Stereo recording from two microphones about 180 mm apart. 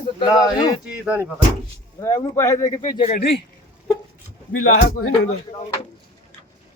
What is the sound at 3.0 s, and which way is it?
Speech, 40° left (ahead or behind).